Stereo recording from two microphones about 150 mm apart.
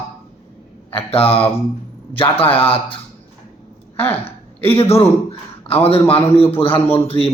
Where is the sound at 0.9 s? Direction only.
40° left (ahead or behind).